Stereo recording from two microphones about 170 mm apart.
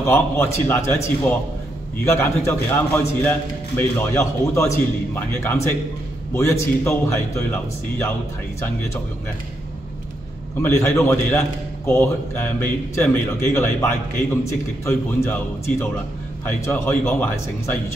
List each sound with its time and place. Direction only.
0.0 s a man's voice: 15° left (ahead or behind)
2.0 s a man's voice: 15° left (ahead or behind)
10.6 s a man's voice: 15° left (ahead or behind)